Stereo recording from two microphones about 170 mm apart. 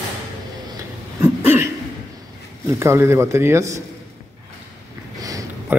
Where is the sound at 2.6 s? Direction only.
15° right (ahead or behind).